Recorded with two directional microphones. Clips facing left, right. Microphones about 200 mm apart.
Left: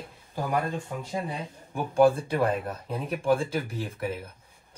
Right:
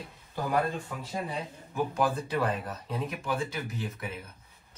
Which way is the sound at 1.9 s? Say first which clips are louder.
Left 10 dB; 30° left (ahead or behind).